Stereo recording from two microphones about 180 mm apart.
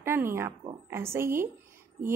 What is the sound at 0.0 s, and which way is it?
A woman's voice, 15° right (ahead or behind).